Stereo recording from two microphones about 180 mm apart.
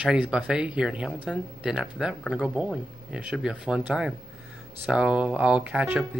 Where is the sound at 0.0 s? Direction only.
5° right (ahead or behind).